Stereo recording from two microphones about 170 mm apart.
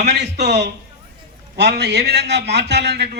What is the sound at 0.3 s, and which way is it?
A man's voice, 80° right.